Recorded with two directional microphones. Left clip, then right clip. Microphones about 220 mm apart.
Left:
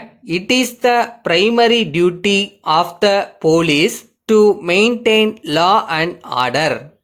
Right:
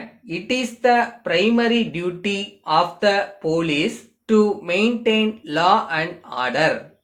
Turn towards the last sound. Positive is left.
turn(degrees=50)  # may be behind; listen again after turning